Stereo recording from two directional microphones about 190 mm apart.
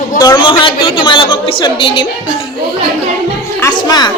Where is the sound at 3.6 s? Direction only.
20° left (ahead or behind).